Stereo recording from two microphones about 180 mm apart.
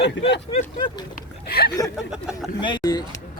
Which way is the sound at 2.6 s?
25° left (ahead or behind).